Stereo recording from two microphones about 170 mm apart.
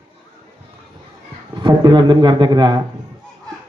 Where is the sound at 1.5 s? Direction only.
25° right (ahead or behind).